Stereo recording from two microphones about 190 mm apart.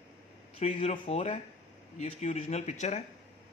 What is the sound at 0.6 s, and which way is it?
Speech, 35° left (ahead or behind).